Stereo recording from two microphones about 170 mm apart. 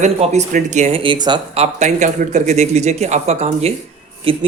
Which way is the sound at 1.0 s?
25° right (ahead or behind).